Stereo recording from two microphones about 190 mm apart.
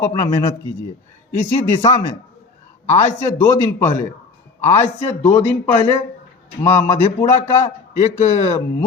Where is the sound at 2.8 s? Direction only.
40° left (ahead or behind).